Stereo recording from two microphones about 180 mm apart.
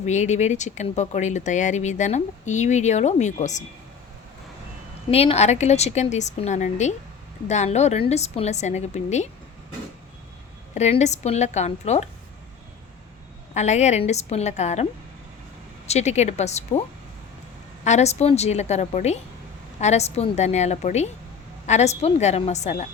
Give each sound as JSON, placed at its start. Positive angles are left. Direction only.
{"t": 0.0, "sound": "speech", "side_deg": 40}
{"t": 5.1, "sound": "speech", "side_deg": 35}
{"t": 10.8, "sound": "speech", "side_deg": 40}
{"t": 13.5, "sound": "speech", "side_deg": 40}
{"t": 15.9, "sound": "speech", "side_deg": 40}
{"t": 17.8, "sound": "speech", "side_deg": 40}